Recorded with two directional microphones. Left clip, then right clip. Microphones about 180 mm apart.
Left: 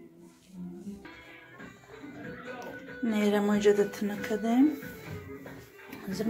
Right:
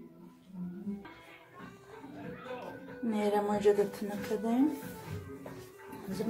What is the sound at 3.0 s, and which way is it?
A woman's voice, 10° left (ahead or behind).